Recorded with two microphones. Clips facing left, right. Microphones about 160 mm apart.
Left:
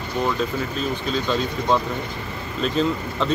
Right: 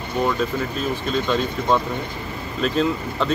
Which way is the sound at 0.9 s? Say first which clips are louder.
Right 3 dB; centre (ahead or behind).